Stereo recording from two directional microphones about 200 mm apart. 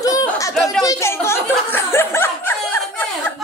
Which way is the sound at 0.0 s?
15° left (ahead or behind).